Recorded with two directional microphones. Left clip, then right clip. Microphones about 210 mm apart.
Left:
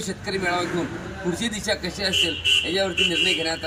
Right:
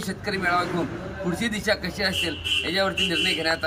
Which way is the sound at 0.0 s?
Centre (ahead or behind).